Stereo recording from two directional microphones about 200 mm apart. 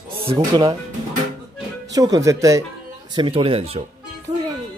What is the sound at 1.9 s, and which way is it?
Speech, 15° right (ahead or behind).